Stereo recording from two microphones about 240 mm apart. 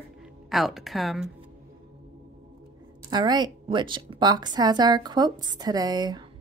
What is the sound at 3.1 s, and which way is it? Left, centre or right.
A woman's voice, centre.